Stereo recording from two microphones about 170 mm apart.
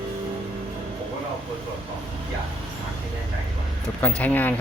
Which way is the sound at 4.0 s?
10° left (ahead or behind).